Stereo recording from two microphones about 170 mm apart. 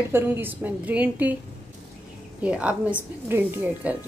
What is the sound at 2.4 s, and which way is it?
A woman's voice, 5° right (ahead or behind).